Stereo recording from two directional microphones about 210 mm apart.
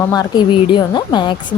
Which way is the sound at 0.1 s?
20° left (ahead or behind).